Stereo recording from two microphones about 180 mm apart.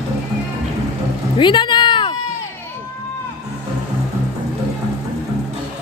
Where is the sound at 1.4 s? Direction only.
25° left (ahead or behind).